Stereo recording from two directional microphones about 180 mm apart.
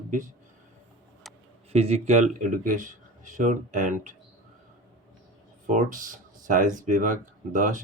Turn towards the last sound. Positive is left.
turn(degrees=-45)  # may be behind; listen again after turning